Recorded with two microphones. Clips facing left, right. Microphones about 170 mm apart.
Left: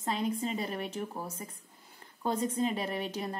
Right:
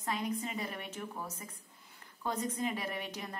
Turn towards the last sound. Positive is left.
turn(degrees=30)  # may be behind; listen again after turning